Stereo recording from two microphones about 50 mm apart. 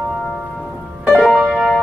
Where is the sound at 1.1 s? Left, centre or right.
Centre.